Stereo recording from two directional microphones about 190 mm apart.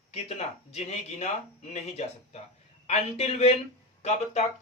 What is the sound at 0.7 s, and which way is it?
Speech, 35° left (ahead or behind).